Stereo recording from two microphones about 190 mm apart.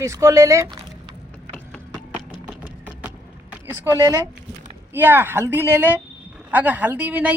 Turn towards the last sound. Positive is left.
turn(degrees=-10)  # may be behind; listen again after turning